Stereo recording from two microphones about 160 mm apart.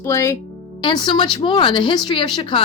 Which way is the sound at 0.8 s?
30° left (ahead or behind).